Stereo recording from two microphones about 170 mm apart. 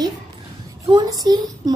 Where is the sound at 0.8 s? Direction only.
25° right (ahead or behind).